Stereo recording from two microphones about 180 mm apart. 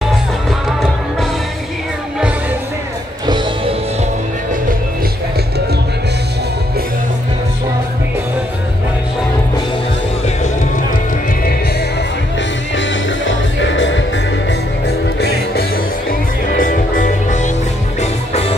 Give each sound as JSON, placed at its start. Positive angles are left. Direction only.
{"t": 3.3, "sound": "music", "side_deg": -25}
{"t": 12.7, "sound": "music", "side_deg": 90}
{"t": 15.1, "sound": "music", "side_deg": 60}
{"t": 16.1, "sound": "music", "side_deg": 50}
{"t": 18.3, "sound": "music", "side_deg": 35}